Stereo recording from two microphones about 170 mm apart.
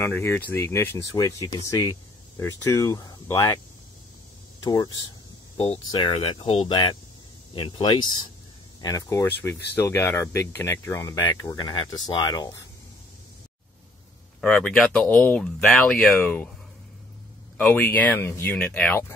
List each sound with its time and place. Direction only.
0.0 s speech: 15° left (ahead or behind)
4.6 s speech: 25° left (ahead or behind)
14.4 s speech: 5° left (ahead or behind)
17.6 s speech: 5° left (ahead or behind)